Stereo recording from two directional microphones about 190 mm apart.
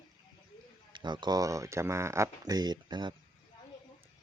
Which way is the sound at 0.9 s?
25° right (ahead or behind).